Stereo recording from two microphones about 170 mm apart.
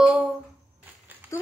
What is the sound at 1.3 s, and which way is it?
Speech, 15° left (ahead or behind).